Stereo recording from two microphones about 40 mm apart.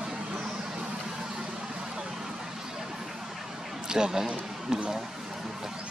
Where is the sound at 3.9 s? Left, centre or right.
Centre.